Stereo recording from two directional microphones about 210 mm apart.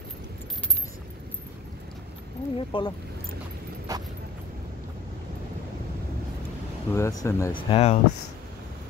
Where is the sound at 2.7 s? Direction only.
25° left (ahead or behind).